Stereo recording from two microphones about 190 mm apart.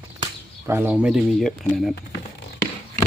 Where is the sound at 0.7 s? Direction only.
10° right (ahead or behind).